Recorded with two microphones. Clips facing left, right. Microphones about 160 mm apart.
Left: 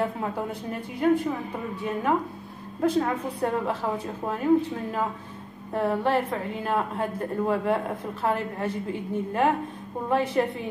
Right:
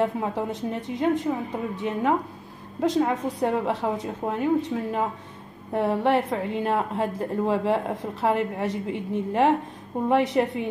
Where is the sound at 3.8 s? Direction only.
20° right (ahead or behind).